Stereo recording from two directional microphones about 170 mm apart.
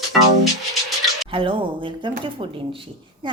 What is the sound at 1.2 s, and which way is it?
Speech, 30° right (ahead or behind).